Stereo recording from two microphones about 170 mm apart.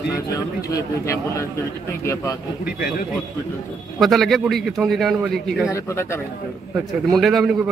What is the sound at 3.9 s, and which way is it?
A man's voice, centre (ahead or behind).